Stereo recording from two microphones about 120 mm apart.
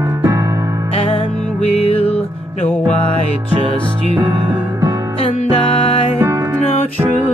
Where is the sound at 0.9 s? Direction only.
50° left (ahead or behind).